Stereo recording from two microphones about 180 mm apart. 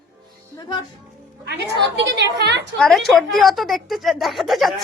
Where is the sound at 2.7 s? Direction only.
Centre (ahead or behind).